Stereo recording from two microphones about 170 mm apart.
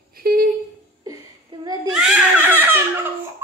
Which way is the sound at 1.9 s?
5° right (ahead or behind).